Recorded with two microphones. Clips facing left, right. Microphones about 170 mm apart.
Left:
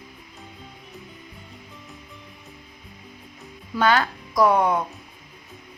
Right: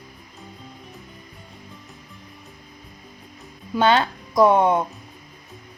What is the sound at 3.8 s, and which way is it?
Speech, 25° right (ahead or behind).